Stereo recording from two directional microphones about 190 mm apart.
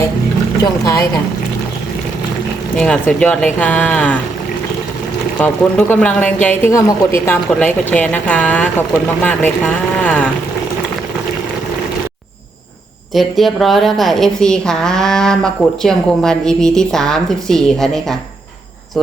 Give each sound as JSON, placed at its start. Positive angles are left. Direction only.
{"t": 0.6, "sound": "speech", "side_deg": 15}
{"t": 2.7, "sound": "speech", "side_deg": 5}
{"t": 5.4, "sound": "a woman's voice", "side_deg": 5}
{"t": 13.1, "sound": "a woman's voice", "side_deg": 0}